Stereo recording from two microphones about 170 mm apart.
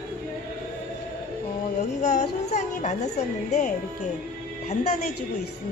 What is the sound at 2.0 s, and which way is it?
Music, 45° left (ahead or behind).